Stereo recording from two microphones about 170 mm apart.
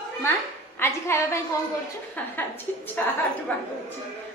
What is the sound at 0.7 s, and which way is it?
A woman's voice, 15° left (ahead or behind).